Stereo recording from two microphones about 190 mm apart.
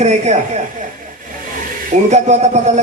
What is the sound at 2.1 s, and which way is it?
Speech, 35° right (ahead or behind).